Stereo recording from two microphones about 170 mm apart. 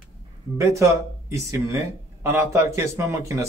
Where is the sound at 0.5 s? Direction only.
15° right (ahead or behind).